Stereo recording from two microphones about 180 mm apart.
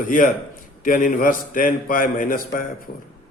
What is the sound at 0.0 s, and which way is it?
A man's voice, 50° left (ahead or behind).